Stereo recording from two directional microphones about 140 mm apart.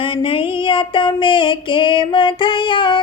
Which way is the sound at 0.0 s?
35° left (ahead or behind).